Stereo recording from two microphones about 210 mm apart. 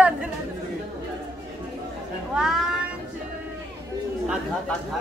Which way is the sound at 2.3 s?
Centre (ahead or behind).